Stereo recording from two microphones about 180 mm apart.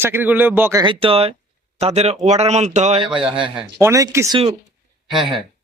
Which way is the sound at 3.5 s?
15° right (ahead or behind).